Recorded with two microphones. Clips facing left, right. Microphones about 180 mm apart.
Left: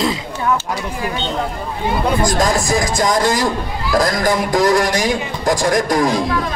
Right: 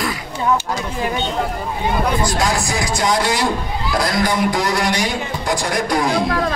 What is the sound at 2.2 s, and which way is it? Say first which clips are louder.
A man's voice: left 3 dB; 45° left (ahead or behind).